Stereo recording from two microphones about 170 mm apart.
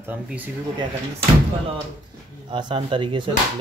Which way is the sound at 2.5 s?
30° right (ahead or behind).